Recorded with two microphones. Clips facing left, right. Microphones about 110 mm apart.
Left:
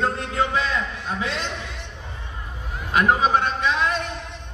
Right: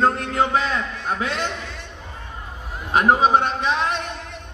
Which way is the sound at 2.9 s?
40° right (ahead or behind).